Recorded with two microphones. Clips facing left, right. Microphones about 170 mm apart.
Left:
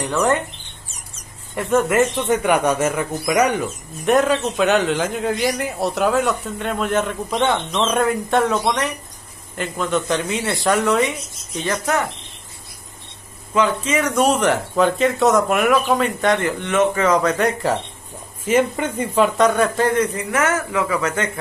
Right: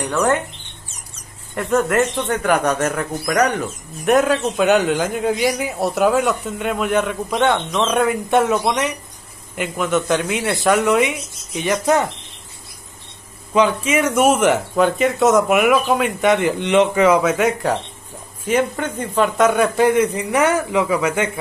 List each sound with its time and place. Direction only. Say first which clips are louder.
0.0 s speech: right 1 dB; centre (ahead or behind)
1.5 s speech: even; 5° left (ahead or behind); by 12.1 s 15° right (ahead or behind)
13.5 s speech: right 2 dB; 15° right (ahead or behind)
16.3 s speech: right 3 dB; 20° right (ahead or behind)